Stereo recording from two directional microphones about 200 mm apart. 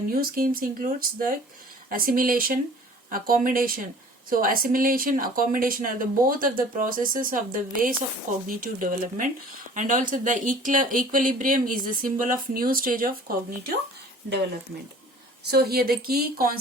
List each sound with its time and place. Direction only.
0.1 s speech: 45° right (ahead or behind)
15.4 s speech: 50° right (ahead or behind)